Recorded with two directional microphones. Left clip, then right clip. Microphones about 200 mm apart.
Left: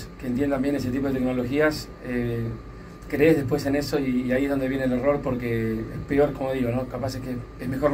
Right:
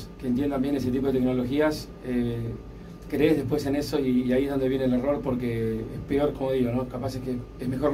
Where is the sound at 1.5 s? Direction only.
Centre (ahead or behind).